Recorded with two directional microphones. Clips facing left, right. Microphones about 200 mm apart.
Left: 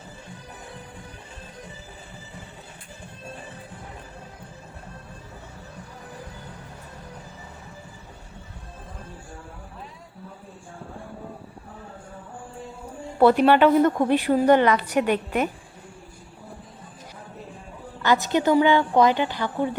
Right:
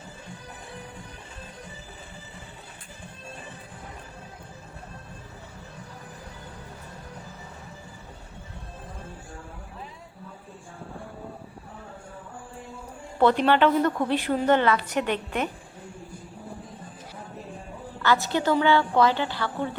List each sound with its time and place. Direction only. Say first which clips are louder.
13.1 s a woman's voice: left 4 dB; 10° left (ahead or behind)
18.0 s a woman's voice: left 3 dB; 15° left (ahead or behind)